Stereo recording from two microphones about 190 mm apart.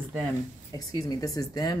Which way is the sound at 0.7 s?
20° left (ahead or behind).